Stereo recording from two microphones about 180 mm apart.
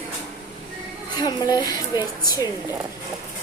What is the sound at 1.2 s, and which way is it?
A woman's voice, 20° left (ahead or behind).